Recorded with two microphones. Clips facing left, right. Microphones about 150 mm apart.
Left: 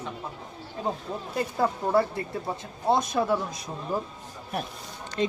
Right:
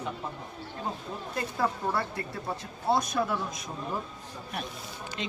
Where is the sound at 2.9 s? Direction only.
25° left (ahead or behind).